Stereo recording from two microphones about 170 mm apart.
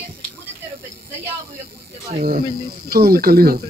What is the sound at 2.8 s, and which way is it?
Speech, 65° right (ahead or behind).